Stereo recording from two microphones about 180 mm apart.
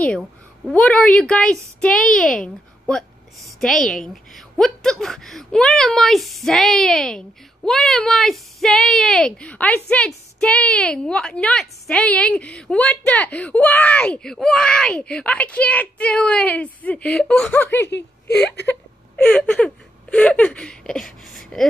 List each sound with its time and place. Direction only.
0.7 s a woman's voice: 5° left (ahead or behind)
17.8 s speech: 75° left (ahead or behind)
19.1 s speech: 5° left (ahead or behind)